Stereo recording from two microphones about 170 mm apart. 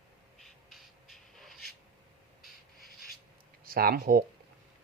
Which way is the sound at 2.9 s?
65° left (ahead or behind).